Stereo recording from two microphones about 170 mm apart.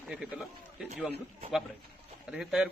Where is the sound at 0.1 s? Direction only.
5° right (ahead or behind).